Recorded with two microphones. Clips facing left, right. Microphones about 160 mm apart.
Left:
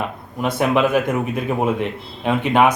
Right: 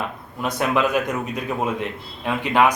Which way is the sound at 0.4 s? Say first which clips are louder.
Left 3 dB; 20° left (ahead or behind).